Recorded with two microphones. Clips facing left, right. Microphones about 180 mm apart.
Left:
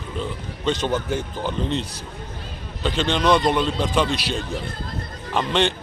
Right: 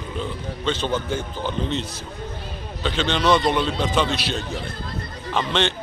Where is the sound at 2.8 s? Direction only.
5° left (ahead or behind).